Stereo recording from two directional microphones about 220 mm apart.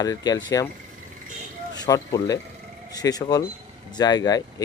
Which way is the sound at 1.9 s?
15° left (ahead or behind).